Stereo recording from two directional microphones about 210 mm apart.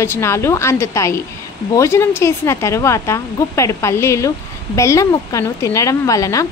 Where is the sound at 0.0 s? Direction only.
10° left (ahead or behind).